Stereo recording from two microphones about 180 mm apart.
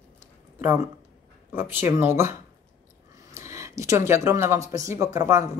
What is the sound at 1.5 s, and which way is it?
Speech, 10° right (ahead or behind).